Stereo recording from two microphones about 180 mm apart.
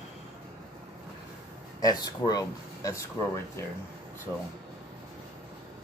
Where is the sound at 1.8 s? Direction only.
20° left (ahead or behind).